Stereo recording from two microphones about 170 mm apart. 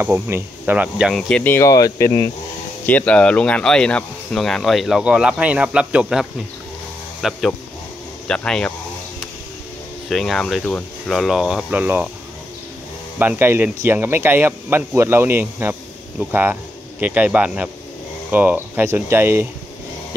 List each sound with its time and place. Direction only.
0.0 s speech: 15° right (ahead or behind)
1.3 s speech: 10° left (ahead or behind)
2.9 s speech: 10° left (ahead or behind)
10.0 s speech: centre (ahead or behind)
13.2 s speech: 10° right (ahead or behind)